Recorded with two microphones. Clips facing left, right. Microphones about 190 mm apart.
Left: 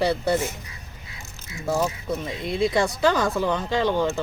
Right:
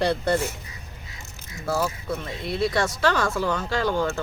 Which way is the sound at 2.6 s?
20° left (ahead or behind).